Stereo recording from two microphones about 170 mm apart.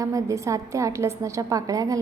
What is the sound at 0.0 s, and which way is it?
A woman's voice, 20° right (ahead or behind).